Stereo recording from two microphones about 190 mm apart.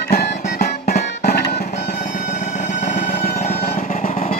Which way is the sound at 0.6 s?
40° left (ahead or behind).